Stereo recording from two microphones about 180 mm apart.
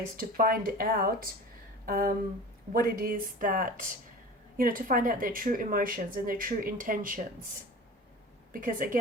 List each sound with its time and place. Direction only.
0.2 s speech: 50° right (ahead or behind)
8.5 s speech: 50° right (ahead or behind)